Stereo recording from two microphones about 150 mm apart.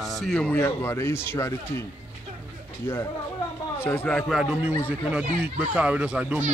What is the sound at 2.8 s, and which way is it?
Speech, 15° left (ahead or behind).